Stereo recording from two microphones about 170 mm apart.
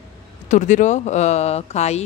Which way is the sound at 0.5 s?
45° left (ahead or behind).